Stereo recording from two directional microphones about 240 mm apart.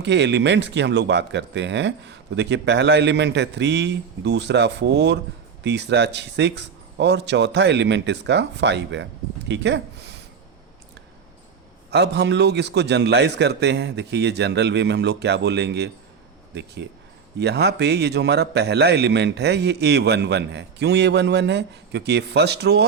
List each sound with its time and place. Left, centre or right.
0.0 s a man's voice: right
11.9 s a man's voice: right
17.3 s a man's voice: right